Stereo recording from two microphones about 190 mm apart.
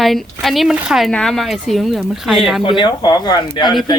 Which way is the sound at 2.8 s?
20° left (ahead or behind).